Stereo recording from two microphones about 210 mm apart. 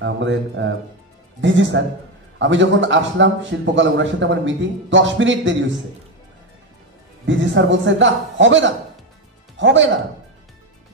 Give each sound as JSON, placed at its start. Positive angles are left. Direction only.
{"t": 0.0, "sound": "a man's voice", "side_deg": -60}
{"t": 7.2, "sound": "a man's voice", "side_deg": -60}